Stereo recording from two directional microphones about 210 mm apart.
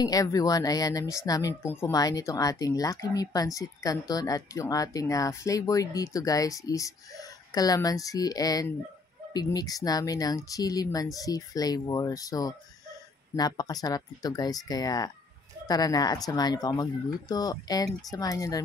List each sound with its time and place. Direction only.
0.0 s speech: 15° left (ahead or behind)